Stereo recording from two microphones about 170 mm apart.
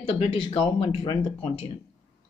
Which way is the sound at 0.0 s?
35° left (ahead or behind).